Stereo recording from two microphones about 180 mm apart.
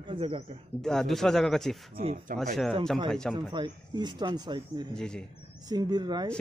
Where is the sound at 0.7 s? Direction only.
5° left (ahead or behind).